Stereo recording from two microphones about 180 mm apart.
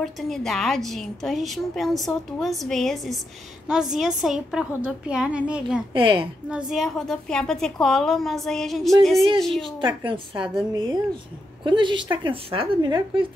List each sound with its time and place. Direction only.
0.0 s a woman's voice: centre (ahead or behind)
5.9 s a woman's voice: 30° right (ahead or behind)
6.5 s a woman's voice: centre (ahead or behind)
9.6 s a woman's voice: 25° right (ahead or behind)
11.6 s a woman's voice: 25° right (ahead or behind)